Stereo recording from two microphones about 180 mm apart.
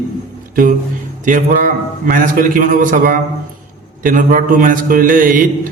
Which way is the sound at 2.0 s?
50° right (ahead or behind).